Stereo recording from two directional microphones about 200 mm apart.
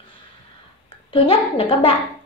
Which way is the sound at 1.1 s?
30° left (ahead or behind).